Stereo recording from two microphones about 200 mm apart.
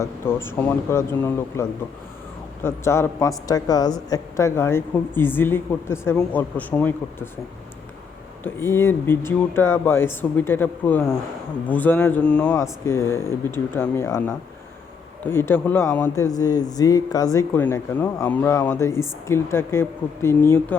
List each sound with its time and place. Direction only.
0.0 s a woman's voice: 10° left (ahead or behind)
2.6 s a woman's voice: 15° left (ahead or behind)
8.4 s a woman's voice: 10° left (ahead or behind)